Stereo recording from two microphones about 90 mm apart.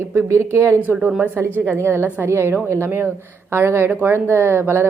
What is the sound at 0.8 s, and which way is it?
A woman's voice, 20° right (ahead or behind).